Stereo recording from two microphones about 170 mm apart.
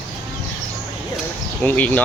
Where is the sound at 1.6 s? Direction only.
10° left (ahead or behind).